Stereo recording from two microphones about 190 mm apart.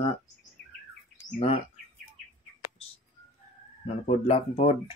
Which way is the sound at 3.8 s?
35° left (ahead or behind).